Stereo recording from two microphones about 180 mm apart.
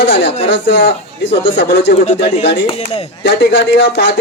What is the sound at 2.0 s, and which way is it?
Speech, 40° left (ahead or behind).